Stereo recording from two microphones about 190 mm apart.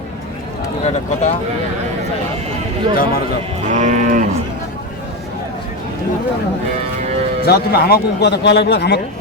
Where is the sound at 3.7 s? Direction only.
40° right (ahead or behind).